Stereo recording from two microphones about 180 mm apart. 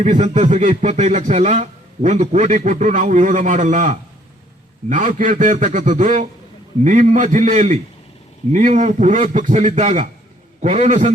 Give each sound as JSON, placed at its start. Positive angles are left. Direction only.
{"t": 0.0, "sound": "a man's voice", "side_deg": -40}